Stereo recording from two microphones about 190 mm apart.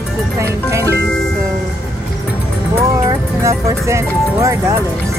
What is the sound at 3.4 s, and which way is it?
Music, 15° right (ahead or behind).